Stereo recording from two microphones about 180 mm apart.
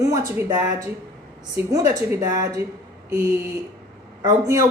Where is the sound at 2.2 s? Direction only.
20° right (ahead or behind).